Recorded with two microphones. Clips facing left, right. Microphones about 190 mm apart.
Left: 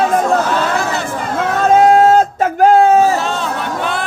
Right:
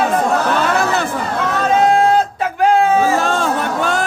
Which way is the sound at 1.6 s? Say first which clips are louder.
Left 4 dB; 45° left (ahead or behind).